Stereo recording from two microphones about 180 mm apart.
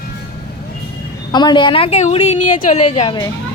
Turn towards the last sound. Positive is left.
turn(degrees=35)  # may be behind; listen again after turning